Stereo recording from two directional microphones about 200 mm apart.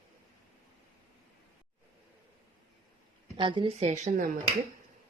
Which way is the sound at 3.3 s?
25° right (ahead or behind).